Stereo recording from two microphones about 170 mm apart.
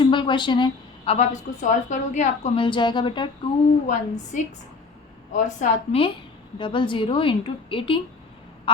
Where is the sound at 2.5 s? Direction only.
30° left (ahead or behind).